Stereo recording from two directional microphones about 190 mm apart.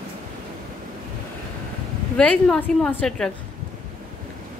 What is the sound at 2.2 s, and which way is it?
A woman's voice, 5° left (ahead or behind).